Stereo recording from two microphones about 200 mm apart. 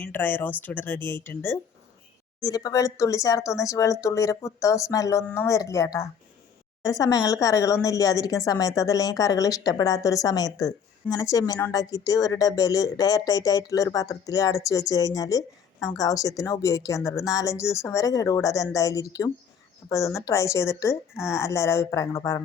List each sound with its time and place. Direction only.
0.0 s a woman's voice: 10° left (ahead or behind)